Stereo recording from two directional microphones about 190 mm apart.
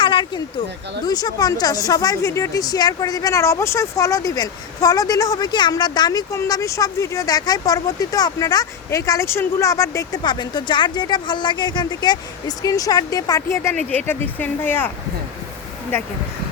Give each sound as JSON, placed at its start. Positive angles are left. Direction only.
{"t": 0.0, "sound": "a sound", "side_deg": 25}
{"t": 1.0, "sound": "a woman's voice", "side_deg": 20}
{"t": 15.9, "sound": "speech", "side_deg": 10}